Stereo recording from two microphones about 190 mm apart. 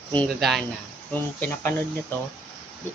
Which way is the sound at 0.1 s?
5° left (ahead or behind).